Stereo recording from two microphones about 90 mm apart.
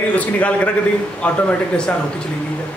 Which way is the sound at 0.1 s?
15° left (ahead or behind).